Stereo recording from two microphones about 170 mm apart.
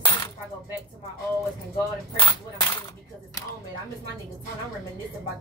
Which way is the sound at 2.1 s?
30° left (ahead or behind).